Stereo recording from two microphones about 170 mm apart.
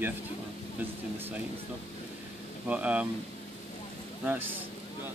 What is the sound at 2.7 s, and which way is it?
Speech, 10° right (ahead or behind).